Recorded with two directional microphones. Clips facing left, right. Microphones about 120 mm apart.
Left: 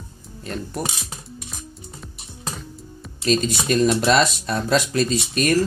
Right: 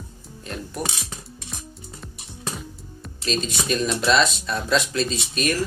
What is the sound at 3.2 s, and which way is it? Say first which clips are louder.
Speech: left 5 dB; 45° left (ahead or behind).